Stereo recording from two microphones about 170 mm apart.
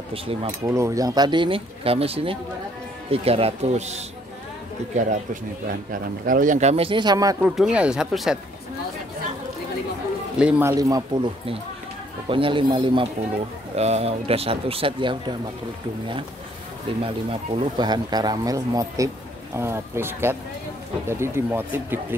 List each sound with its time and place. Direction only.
0.1 s speech: 35° right (ahead or behind)
0.7 s speech: 15° right (ahead or behind)
7.4 s speech: 5° right (ahead or behind)
10.4 s speech: 10° right (ahead or behind); by 15.3 s 30° right (ahead or behind)
17.0 s speech: 30° right (ahead or behind); by 22.0 s 10° right (ahead or behind)